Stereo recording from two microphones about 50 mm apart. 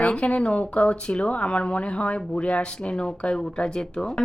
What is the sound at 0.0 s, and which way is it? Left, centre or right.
Speech, left.